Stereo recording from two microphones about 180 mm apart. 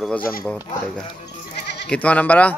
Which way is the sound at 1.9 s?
10° left (ahead or behind).